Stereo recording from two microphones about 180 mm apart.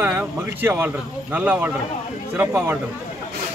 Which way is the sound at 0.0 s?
10° right (ahead or behind).